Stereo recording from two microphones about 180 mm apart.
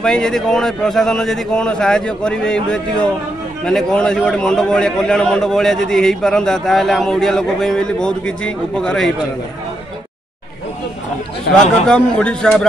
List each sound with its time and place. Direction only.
0.0 s a man's voice: 5° left (ahead or behind)
11.5 s speech: 70° left (ahead or behind)
11.9 s a man's voice: 5° left (ahead or behind)